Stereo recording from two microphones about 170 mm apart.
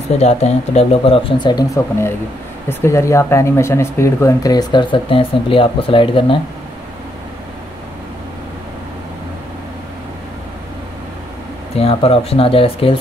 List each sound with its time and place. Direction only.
0.2 s speech: 40° left (ahead or behind)
11.7 s speech: 35° left (ahead or behind)